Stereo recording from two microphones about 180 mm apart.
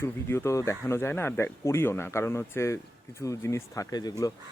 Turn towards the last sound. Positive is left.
turn(degrees=20)  # may be behind; listen again after turning